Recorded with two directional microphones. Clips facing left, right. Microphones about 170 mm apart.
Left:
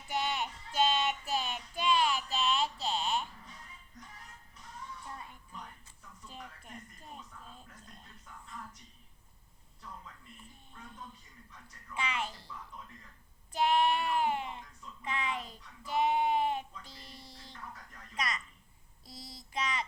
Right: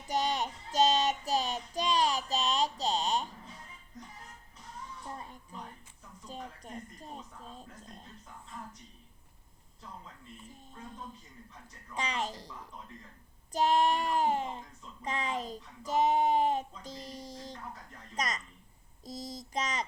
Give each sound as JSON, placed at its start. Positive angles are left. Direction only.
{"t": 0.1, "sound": "child singing", "side_deg": -40}
{"t": 5.0, "sound": "music", "side_deg": -35}
{"t": 11.9, "sound": "speech", "side_deg": -40}
{"t": 13.5, "sound": "child singing", "side_deg": -40}
{"t": 18.1, "sound": "a sound", "side_deg": -40}
{"t": 19.0, "sound": "child singing", "side_deg": -45}